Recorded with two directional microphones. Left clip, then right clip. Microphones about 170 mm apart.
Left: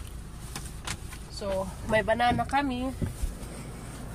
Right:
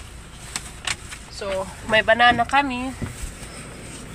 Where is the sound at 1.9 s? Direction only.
5° left (ahead or behind).